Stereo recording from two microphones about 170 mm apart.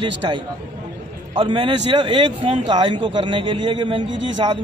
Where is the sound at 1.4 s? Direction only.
30° right (ahead or behind).